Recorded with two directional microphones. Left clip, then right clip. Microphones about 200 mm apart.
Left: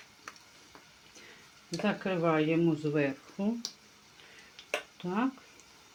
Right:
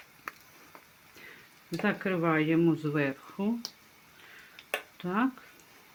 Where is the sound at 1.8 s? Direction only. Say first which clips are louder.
Right 1 dB; 25° right (ahead or behind).